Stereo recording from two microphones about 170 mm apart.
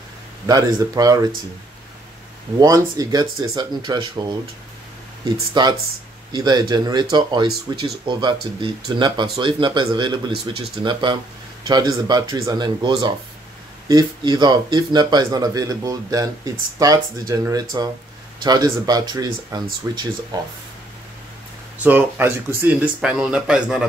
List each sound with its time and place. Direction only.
0.5 s speech: 20° right (ahead or behind)
2.6 s speech: 20° right (ahead or behind)
5.5 s speech: 25° right (ahead or behind)
21.8 s speech: 10° right (ahead or behind)